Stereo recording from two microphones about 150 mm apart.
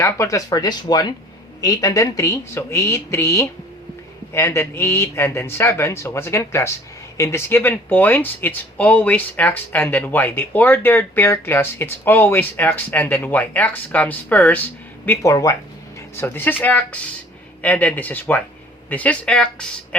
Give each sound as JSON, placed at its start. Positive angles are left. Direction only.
{"t": 0.0, "sound": "speech", "side_deg": 20}